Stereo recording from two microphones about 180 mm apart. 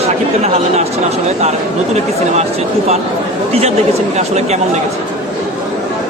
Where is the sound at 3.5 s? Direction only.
35° right (ahead or behind).